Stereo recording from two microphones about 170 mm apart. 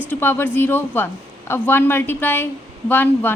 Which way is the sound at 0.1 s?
15° left (ahead or behind).